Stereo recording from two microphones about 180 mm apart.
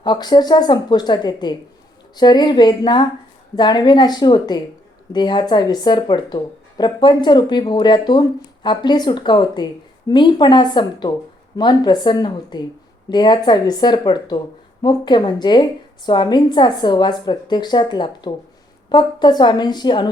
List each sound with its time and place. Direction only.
0.0 s speech: 25° left (ahead or behind)